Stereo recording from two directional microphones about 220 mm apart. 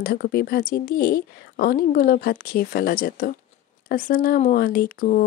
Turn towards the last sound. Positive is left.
turn(degrees=40)  # may be behind; listen again after turning